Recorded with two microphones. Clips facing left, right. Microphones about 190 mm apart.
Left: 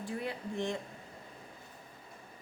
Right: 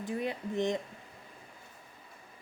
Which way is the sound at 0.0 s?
20° right (ahead or behind).